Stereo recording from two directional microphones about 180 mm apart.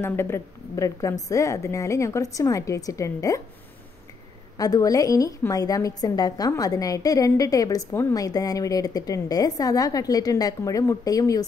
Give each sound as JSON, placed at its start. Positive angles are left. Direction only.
{"t": 0.0, "sound": "a woman's voice", "side_deg": 15}
{"t": 4.6, "sound": "a woman's voice", "side_deg": 20}